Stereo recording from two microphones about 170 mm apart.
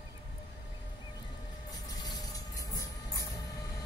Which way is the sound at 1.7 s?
25° left (ahead or behind).